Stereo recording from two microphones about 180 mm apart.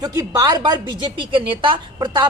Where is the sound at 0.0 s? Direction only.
20° right (ahead or behind).